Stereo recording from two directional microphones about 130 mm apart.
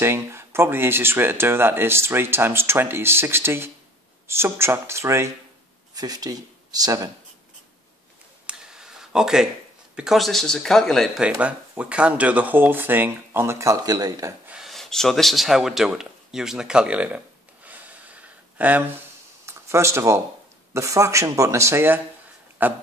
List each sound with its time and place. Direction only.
0.0 s speech: 20° right (ahead or behind)
8.5 s a sound: 5° right (ahead or behind)
9.9 s speech: centre (ahead or behind)
11.2 s speech: 15° right (ahead or behind); by 14.3 s 30° right (ahead or behind)
14.5 s speech: centre (ahead or behind)
17.6 s gasp: 10° right (ahead or behind)
19.4 s a sound: 20° right (ahead or behind)
20.7 s speech: 25° right (ahead or behind)